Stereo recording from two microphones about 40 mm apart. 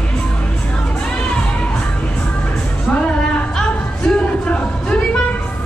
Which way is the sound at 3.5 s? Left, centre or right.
Centre.